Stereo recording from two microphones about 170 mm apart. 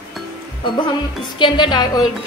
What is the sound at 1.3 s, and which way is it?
Speech, 25° left (ahead or behind).